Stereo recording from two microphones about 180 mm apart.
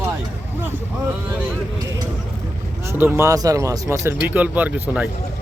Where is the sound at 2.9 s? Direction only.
15° right (ahead or behind).